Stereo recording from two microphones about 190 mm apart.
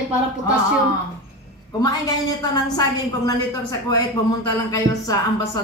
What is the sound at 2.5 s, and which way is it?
Speech, 20° left (ahead or behind).